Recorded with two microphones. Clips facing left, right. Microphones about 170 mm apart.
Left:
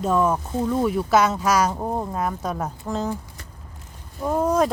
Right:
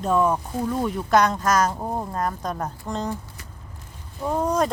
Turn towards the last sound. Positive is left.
turn(degrees=5)  # may be behind; listen again after turning